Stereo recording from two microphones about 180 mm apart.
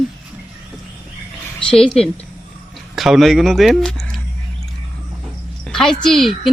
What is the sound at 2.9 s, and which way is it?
Speech, centre (ahead or behind).